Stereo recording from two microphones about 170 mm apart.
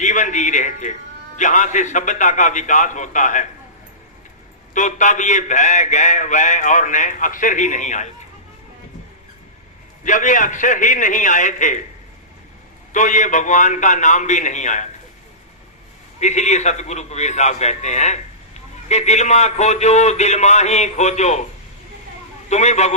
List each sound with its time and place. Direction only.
0.0 s a man's voice: 45° left (ahead or behind)
4.7 s a man's voice: 45° left (ahead or behind)
10.0 s a man's voice: 50° left (ahead or behind)
12.9 s a man's voice: 45° left (ahead or behind)
16.2 s a man's voice: 45° left (ahead or behind)
22.4 s a man's voice: 45° left (ahead or behind)